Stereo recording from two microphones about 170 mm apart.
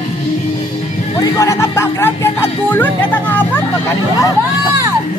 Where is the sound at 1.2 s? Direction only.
20° left (ahead or behind).